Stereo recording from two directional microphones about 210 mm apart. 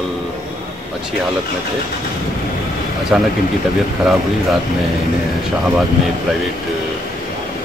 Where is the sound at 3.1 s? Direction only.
5° right (ahead or behind).